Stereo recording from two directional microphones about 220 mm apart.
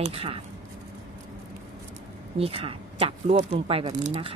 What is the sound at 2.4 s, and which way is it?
A woman's voice, 25° right (ahead or behind).